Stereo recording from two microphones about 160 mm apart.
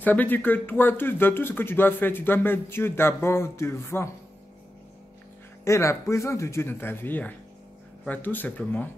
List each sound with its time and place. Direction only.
0.0 s speech: 10° left (ahead or behind)
5.7 s speech: 15° left (ahead or behind)